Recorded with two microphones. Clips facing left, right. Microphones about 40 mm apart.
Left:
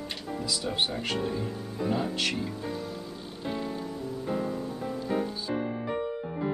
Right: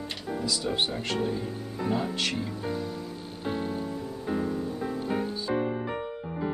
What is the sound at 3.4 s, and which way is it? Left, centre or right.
Music, right.